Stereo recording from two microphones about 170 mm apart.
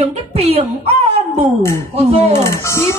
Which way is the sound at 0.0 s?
40° right (ahead or behind).